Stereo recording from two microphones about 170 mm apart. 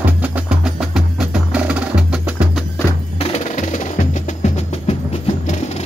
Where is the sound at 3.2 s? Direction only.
40° left (ahead or behind).